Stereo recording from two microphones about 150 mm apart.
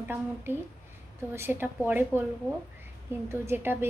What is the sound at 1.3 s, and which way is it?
Speech, 15° right (ahead or behind).